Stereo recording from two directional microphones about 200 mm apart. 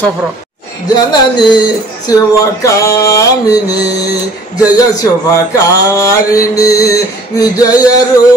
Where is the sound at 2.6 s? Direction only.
15° left (ahead or behind).